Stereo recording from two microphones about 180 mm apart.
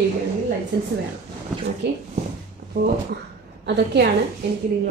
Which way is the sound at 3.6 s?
75° right (ahead or behind).